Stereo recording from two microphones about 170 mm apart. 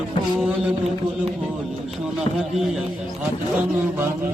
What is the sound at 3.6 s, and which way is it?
Speech, 15° right (ahead or behind).